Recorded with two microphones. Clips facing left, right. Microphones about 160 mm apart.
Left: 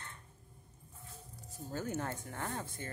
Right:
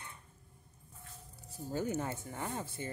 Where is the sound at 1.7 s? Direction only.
10° right (ahead or behind).